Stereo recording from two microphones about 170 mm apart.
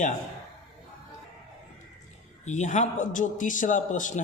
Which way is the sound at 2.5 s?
45° left (ahead or behind).